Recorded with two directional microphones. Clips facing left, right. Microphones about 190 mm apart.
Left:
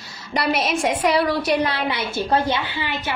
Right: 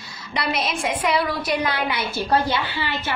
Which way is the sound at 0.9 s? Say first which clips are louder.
Left 2 dB; 40° left (ahead or behind).